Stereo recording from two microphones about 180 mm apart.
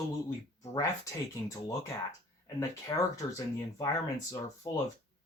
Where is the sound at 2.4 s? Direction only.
20° left (ahead or behind).